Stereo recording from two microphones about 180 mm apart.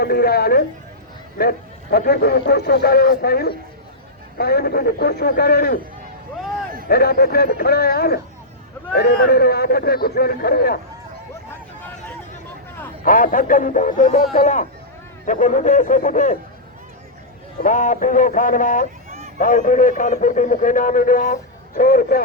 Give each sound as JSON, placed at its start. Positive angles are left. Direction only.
{"t": 0.0, "sound": "a man's voice", "side_deg": 60}
{"t": 6.8, "sound": "a man's voice", "side_deg": 60}
{"t": 13.0, "sound": "a man's voice", "side_deg": 50}
{"t": 17.6, "sound": "a man's voice", "side_deg": 45}